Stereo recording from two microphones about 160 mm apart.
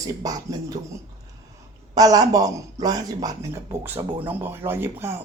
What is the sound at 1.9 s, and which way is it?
A woman's voice, 25° right (ahead or behind).